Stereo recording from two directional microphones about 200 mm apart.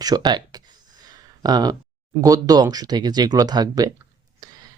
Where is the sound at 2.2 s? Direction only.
20° right (ahead or behind).